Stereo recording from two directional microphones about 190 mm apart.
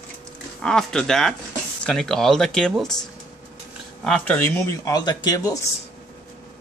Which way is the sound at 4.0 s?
5° left (ahead or behind).